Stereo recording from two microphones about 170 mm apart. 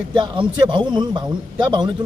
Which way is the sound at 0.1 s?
30° right (ahead or behind).